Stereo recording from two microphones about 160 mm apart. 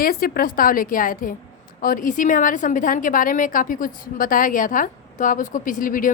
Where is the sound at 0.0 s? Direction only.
65° left (ahead or behind).